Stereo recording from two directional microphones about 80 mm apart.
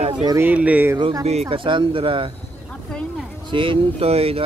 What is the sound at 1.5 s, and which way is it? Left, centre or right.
Speech, right.